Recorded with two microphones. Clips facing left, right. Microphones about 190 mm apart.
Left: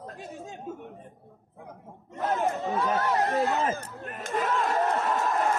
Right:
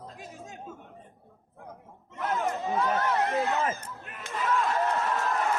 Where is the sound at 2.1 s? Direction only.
40° left (ahead or behind).